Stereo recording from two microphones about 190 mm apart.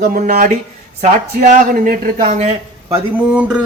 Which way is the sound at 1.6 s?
45° right (ahead or behind).